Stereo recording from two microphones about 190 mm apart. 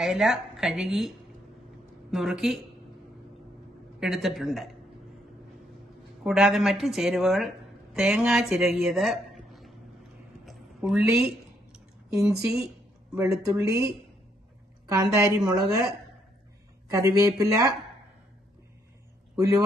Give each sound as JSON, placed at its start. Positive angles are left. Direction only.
{"t": 0.0, "sound": "a woman's voice", "side_deg": 0}
{"t": 4.0, "sound": "a woman's voice", "side_deg": 0}
{"t": 6.2, "sound": "a woman's voice", "side_deg": 0}
{"t": 9.5, "sound": "a sound", "side_deg": 0}
{"t": 12.2, "sound": "a woman's voice", "side_deg": -15}
{"t": 14.9, "sound": "a woman's voice", "side_deg": -15}
{"t": 16.9, "sound": "a woman's voice", "side_deg": -15}
{"t": 19.3, "sound": "speech", "side_deg": -15}